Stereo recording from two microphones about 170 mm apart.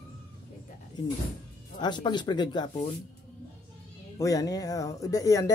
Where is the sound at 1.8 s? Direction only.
25° left (ahead or behind).